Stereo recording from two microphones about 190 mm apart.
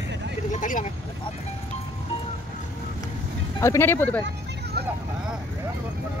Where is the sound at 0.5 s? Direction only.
40° left (ahead or behind).